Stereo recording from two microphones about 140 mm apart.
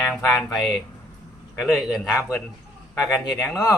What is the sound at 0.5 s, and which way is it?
A man's voice, centre (ahead or behind).